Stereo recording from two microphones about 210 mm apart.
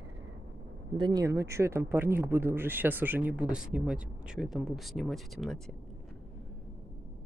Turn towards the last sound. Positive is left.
turn(degrees=0)  # may be behind; listen again after turning